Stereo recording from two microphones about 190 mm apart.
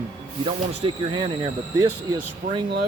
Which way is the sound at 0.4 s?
30° right (ahead or behind).